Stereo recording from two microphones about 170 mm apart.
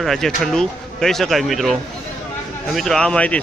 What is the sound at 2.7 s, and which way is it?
Speech, 5° left (ahead or behind).